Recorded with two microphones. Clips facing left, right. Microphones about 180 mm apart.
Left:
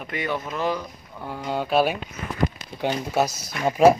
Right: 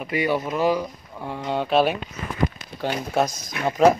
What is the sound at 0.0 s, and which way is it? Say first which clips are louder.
Speech: right 5 dB; 10° right (ahead or behind).